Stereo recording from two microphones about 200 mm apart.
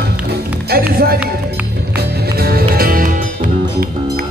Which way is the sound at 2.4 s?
50° right (ahead or behind).